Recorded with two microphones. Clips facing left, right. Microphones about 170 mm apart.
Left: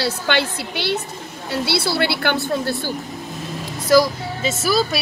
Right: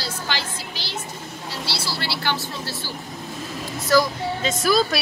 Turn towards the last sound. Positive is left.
turn(degrees=5)  # may be behind; listen again after turning